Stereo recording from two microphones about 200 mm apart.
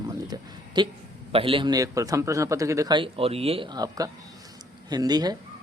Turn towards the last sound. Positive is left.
turn(degrees=-20)  # may be behind; listen again after turning